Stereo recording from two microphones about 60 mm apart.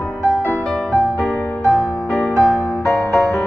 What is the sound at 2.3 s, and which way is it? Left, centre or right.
Music, left.